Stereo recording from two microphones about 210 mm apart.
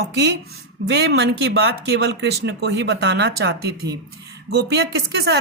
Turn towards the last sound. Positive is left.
turn(degrees=-50)  # may be behind; listen again after turning